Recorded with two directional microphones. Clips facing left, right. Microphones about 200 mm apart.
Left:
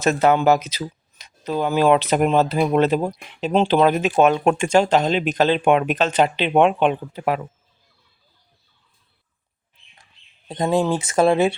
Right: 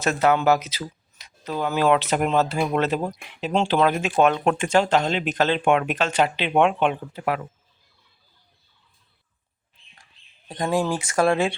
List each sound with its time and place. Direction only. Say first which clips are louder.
0.0 s speech: left 3 dB; 20° left (ahead or behind)
10.5 s speech: left 4 dB; 25° left (ahead or behind)